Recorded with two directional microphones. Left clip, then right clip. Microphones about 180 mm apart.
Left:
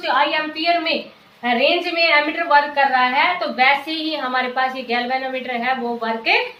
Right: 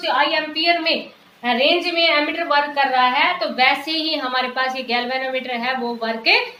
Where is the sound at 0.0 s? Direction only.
15° right (ahead or behind).